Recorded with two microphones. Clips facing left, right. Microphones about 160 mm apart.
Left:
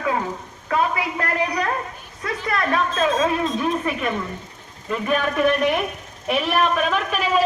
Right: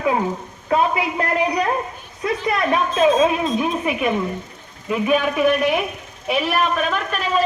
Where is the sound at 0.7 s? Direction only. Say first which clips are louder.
Right 3 dB; 20° right (ahead or behind).